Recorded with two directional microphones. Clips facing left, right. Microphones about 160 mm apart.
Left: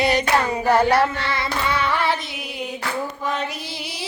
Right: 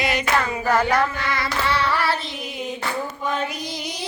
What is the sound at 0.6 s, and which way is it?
Hands, 30° left (ahead or behind).